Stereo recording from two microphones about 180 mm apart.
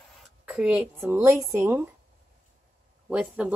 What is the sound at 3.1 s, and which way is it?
Speech, 5° right (ahead or behind).